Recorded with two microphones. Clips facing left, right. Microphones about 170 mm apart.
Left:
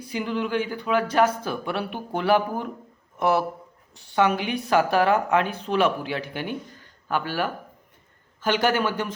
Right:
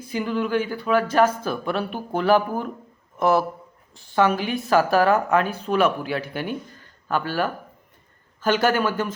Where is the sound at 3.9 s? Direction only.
20° left (ahead or behind).